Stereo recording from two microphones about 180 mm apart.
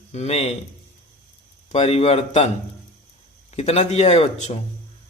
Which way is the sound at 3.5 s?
35° left (ahead or behind).